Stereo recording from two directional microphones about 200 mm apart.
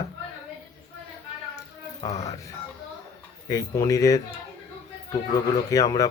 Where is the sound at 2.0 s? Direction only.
15° left (ahead or behind).